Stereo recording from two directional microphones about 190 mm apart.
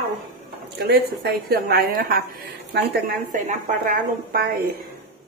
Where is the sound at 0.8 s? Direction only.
55° right (ahead or behind).